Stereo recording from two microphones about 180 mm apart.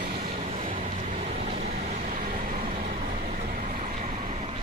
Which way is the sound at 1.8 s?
45° right (ahead or behind).